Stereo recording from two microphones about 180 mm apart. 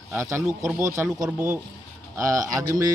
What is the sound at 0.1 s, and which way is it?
Speech, 15° right (ahead or behind).